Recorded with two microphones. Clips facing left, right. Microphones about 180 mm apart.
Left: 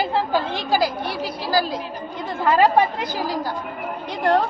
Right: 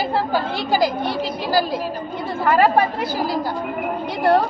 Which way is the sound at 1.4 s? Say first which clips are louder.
Right 1 dB; 15° right (ahead or behind).